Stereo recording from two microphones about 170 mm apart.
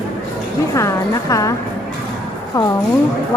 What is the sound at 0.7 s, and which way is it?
Speech, 15° left (ahead or behind).